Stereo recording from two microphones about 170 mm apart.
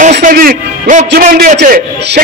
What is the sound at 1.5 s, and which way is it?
Speech, 80° right.